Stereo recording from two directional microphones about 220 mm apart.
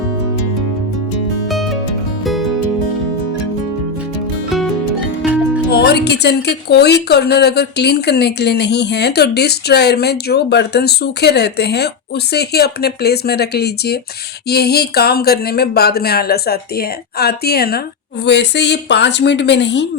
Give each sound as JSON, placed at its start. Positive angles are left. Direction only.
{"t": 1.5, "sound": "music", "side_deg": 0}
{"t": 4.4, "sound": "music", "side_deg": 0}
{"t": 5.7, "sound": "a woman's voice", "side_deg": 50}